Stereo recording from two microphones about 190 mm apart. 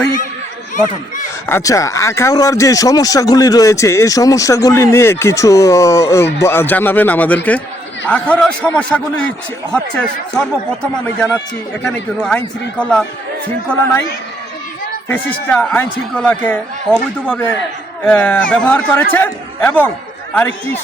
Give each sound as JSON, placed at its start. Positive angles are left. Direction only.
{"t": 1.5, "sound": "a man's voice", "side_deg": 15}
{"t": 11.8, "sound": "a man's voice", "side_deg": 5}
{"t": 15.1, "sound": "speech", "side_deg": 10}